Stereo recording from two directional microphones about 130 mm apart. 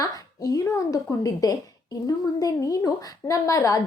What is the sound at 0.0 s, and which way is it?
A woman's voice, 30° left (ahead or behind).